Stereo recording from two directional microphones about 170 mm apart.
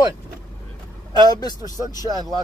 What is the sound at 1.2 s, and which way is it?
Speech, 25° left (ahead or behind).